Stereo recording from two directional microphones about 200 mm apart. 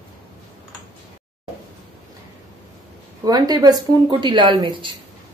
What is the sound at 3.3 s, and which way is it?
Speech, 20° right (ahead or behind).